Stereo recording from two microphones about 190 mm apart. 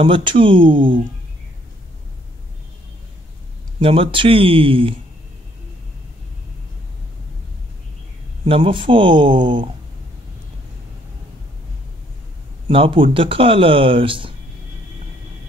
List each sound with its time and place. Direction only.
0.0 s speech: 25° right (ahead or behind)
3.8 s speech: 30° right (ahead or behind)
8.5 s speech: 30° right (ahead or behind)
12.6 s speech: 30° right (ahead or behind)